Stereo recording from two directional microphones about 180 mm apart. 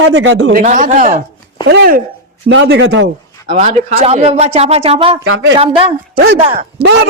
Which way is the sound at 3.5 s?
40° right (ahead or behind).